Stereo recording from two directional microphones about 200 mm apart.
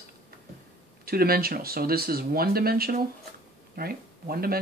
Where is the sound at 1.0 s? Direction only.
50° right (ahead or behind).